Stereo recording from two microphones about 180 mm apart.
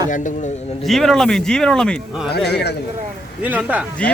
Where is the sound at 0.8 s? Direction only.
Centre (ahead or behind).